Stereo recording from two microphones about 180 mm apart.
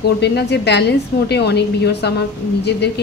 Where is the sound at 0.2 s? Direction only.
70° left (ahead or behind).